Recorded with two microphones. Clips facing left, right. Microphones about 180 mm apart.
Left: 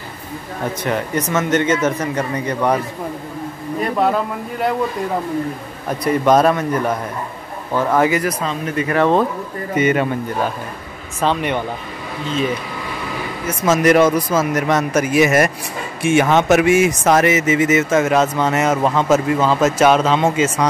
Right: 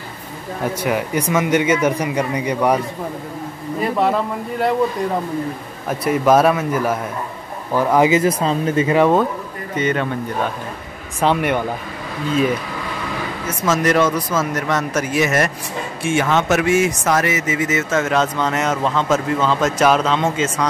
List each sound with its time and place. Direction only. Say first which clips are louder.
0.8 s speech: even; 10° right (ahead or behind)
3.8 s a man's voice: even; centre (ahead or behind)
5.9 s a man's voice: even; 5° right (ahead or behind)
9.8 s speech: left 3 dB; 10° left (ahead or behind)
11.1 s speech: right 1 dB; 10° right (ahead or behind)
13.7 s speech: left 4 dB; 15° left (ahead or behind)